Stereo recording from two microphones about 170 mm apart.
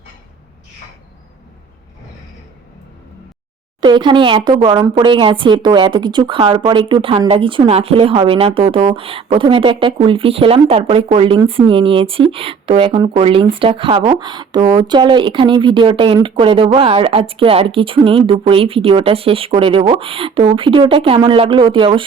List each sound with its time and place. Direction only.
3.8 s speech: 25° right (ahead or behind)